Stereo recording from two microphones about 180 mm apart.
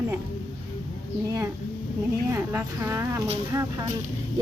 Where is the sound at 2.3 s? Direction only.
15° right (ahead or behind).